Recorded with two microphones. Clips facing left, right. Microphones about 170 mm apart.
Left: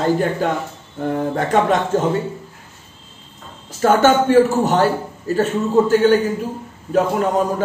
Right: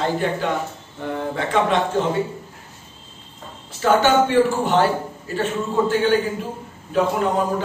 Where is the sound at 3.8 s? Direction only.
45° left (ahead or behind).